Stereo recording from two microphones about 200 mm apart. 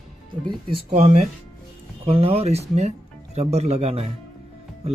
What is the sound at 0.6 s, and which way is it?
Speech, 35° right (ahead or behind).